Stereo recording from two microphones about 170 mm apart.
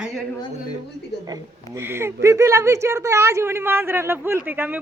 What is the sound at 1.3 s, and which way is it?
Speech, 15° right (ahead or behind).